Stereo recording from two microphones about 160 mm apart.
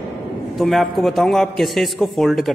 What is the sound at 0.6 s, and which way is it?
A man's voice, centre (ahead or behind).